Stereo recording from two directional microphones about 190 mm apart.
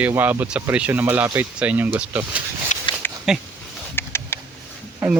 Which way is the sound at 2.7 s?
40° left (ahead or behind).